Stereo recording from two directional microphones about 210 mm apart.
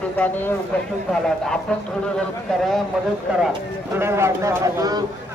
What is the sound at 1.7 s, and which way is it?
A man's voice, 5° left (ahead or behind).